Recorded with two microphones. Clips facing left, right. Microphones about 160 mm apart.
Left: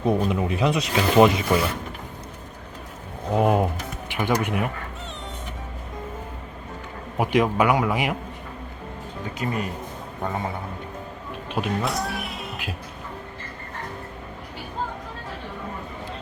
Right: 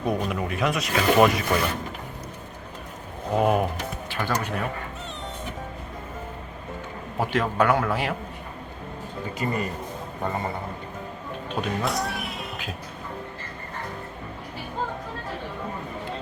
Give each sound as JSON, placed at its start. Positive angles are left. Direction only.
{"t": 0.0, "sound": "speech", "side_deg": 25}
{"t": 3.3, "sound": "a man's voice", "side_deg": 20}
{"t": 7.2, "sound": "a man's voice", "side_deg": 15}
{"t": 9.4, "sound": "speech", "side_deg": 0}
{"t": 11.5, "sound": "a sound", "side_deg": 0}